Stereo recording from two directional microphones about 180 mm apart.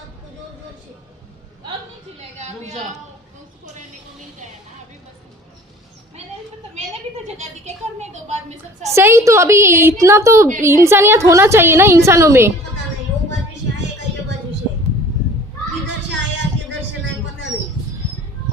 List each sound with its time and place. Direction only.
2.1 s a woman's voice: 35° right (ahead or behind)
7.3 s a woman's voice: 40° right (ahead or behind)
9.0 s a woman's voice: 15° right (ahead or behind)